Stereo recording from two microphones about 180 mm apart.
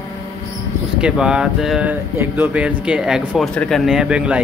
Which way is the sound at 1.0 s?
5° right (ahead or behind).